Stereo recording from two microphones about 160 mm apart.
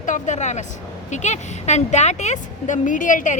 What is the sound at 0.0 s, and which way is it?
A woman's voice, 50° left (ahead or behind).